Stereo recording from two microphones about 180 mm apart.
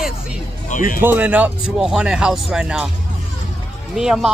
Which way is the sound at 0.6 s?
45° left (ahead or behind).